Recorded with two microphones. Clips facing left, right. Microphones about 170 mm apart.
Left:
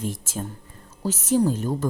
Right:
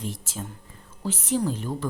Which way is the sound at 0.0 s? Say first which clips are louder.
Left 4 dB; 50° left (ahead or behind).